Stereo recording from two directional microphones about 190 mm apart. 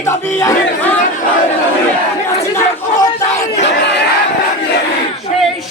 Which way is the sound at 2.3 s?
15° left (ahead or behind).